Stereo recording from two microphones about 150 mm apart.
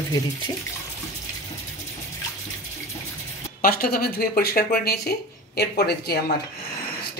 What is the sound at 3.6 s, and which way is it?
Speech, 85° left.